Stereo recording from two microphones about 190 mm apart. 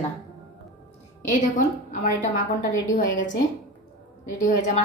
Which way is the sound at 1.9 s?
45° left (ahead or behind).